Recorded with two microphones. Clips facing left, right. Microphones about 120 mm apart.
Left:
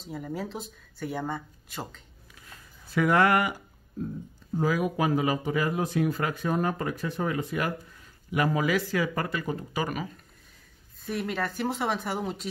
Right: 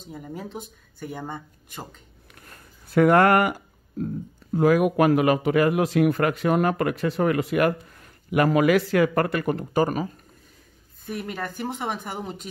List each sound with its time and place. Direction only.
0.1 s speech: centre (ahead or behind)
1.1 s speech: 15° right (ahead or behind)
2.4 s a sound: 55° right (ahead or behind)
4.6 s a man's voice: 65° right (ahead or behind)
9.8 s speech: 40° right (ahead or behind)
11.3 s speech: 15° right (ahead or behind)